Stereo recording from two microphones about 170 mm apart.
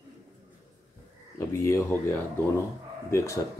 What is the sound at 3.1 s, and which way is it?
Speech, 15° left (ahead or behind).